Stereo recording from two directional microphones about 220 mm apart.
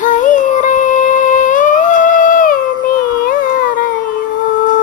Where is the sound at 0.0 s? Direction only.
35° left (ahead or behind).